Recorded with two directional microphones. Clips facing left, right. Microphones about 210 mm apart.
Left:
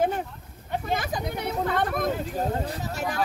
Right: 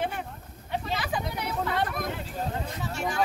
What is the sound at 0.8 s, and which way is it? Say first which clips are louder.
Speech: left 4 dB; 50° left (ahead or behind).